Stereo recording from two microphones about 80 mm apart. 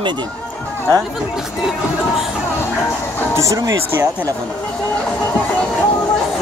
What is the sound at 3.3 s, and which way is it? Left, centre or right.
Speech, right.